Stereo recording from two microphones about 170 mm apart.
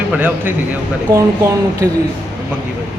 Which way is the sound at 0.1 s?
10° right (ahead or behind).